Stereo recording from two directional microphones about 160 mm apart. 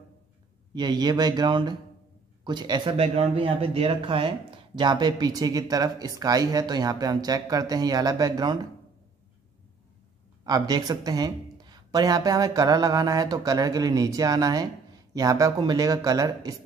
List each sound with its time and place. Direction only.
0.7 s speech: 25° right (ahead or behind)
10.4 s speech: 25° right (ahead or behind)